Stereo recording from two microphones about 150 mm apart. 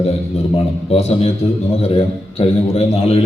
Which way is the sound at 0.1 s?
45° left (ahead or behind).